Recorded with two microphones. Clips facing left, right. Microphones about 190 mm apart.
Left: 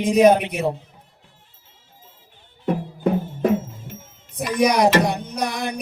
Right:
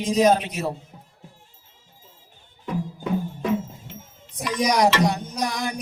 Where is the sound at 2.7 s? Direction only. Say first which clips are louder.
Left 5 dB; 50° left (ahead or behind).